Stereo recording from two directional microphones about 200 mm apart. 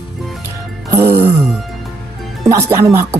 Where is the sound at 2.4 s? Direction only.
15° right (ahead or behind).